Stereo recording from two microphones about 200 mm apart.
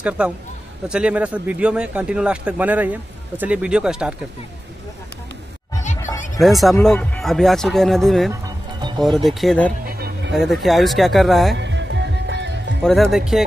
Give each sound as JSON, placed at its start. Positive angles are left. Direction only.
{"t": 0.2, "sound": "a man's voice", "side_deg": -5}
{"t": 6.3, "sound": "a man's voice", "side_deg": 0}
{"t": 9.8, "sound": "a sound", "side_deg": -50}
{"t": 10.3, "sound": "a man's voice", "side_deg": 0}
{"t": 11.5, "sound": "music", "side_deg": -60}
{"t": 12.8, "sound": "a man's voice", "side_deg": 0}